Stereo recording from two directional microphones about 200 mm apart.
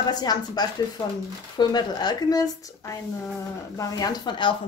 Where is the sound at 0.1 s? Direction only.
20° left (ahead or behind).